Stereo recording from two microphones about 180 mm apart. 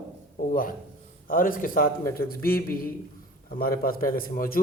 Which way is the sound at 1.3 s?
50° left (ahead or behind).